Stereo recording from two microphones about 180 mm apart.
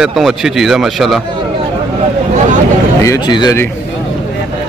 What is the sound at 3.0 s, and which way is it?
Speech, 20° left (ahead or behind).